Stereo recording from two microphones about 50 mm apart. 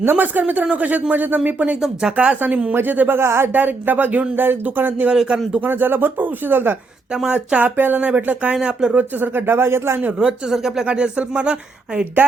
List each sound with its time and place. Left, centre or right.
0.0 s speech: right
1.8 s speech: centre
2.1 s speech: right
3.2 s speech: right
3.5 s speech: right
7.3 s speech: right
10.2 s speech: centre